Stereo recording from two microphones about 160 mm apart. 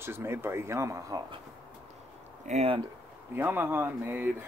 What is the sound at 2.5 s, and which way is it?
Speech, 40° right (ahead or behind).